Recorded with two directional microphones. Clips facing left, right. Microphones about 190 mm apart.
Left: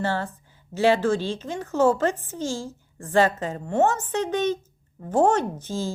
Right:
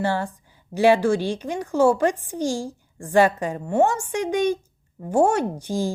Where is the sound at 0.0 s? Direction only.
15° right (ahead or behind).